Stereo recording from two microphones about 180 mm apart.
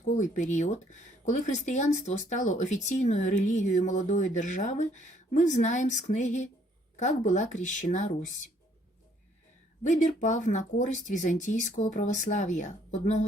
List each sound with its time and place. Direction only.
0.2 s speech: 45° left (ahead or behind)
9.8 s speech: 40° left (ahead or behind)